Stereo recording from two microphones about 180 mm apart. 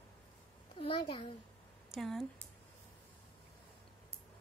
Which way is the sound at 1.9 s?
Centre (ahead or behind).